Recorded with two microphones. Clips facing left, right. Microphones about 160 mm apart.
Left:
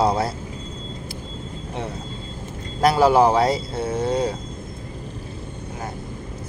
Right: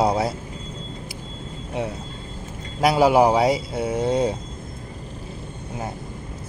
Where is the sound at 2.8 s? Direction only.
15° right (ahead or behind).